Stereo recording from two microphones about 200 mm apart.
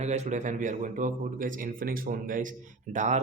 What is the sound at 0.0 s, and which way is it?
Speech, 35° right (ahead or behind).